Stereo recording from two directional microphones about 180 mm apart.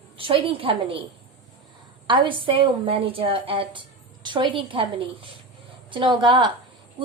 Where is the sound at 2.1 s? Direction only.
25° right (ahead or behind).